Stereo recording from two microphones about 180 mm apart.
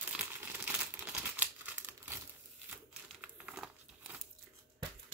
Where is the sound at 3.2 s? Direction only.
5° right (ahead or behind).